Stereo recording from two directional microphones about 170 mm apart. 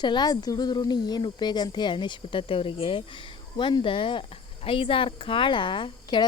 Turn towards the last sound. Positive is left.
turn(degrees=30)  # may be behind; listen again after turning